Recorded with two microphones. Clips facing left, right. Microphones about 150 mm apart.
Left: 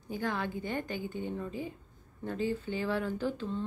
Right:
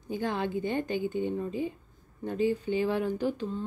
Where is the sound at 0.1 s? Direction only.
20° right (ahead or behind).